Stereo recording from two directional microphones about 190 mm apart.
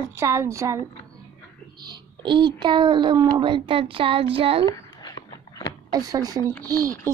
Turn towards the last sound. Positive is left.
turn(degrees=-15)  # may be behind; listen again after turning